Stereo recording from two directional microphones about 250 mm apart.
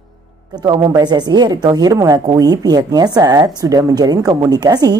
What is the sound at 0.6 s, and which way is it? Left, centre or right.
Speech, centre.